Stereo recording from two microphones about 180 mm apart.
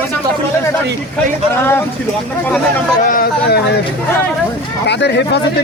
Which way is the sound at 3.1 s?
55° left (ahead or behind).